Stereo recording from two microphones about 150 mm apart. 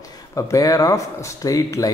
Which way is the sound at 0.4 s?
20° left (ahead or behind).